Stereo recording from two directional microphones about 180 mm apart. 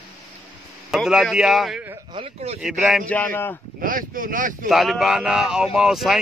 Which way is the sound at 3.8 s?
50° right (ahead or behind).